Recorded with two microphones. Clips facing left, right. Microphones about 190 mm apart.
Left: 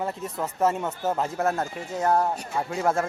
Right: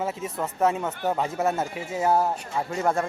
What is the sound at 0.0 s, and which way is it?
Speech, centre (ahead or behind).